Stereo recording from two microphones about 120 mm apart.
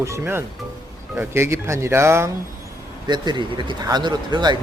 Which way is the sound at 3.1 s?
40° right (ahead or behind).